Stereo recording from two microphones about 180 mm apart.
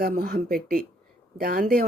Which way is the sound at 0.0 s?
60° right (ahead or behind).